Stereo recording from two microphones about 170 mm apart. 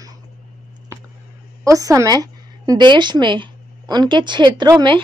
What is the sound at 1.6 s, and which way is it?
A woman's voice, 20° right (ahead or behind).